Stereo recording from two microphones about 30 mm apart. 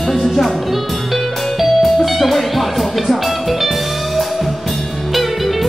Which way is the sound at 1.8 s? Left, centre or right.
Centre.